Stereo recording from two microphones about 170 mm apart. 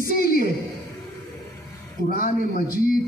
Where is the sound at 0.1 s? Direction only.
60° left (ahead or behind).